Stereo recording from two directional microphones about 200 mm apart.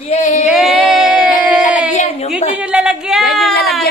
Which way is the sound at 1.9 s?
35° left (ahead or behind).